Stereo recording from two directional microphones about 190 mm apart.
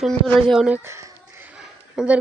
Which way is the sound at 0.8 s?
15° right (ahead or behind).